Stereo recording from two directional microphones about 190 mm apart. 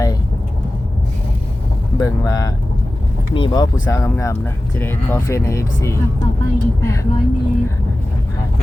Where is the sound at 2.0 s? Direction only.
20° left (ahead or behind).